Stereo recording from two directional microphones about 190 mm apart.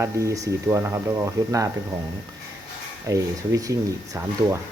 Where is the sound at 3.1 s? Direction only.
15° right (ahead or behind).